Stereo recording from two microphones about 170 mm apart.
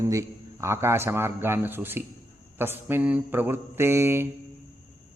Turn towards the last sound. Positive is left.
turn(degrees=-15)  # may be behind; listen again after turning